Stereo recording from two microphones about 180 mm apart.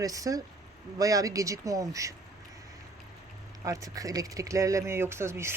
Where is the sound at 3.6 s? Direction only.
15° right (ahead or behind).